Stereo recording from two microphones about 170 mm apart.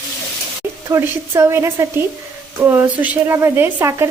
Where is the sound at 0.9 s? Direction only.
15° right (ahead or behind).